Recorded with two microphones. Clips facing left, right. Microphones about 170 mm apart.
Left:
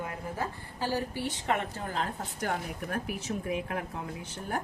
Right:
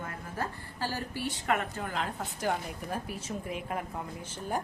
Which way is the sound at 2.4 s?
60° left (ahead or behind).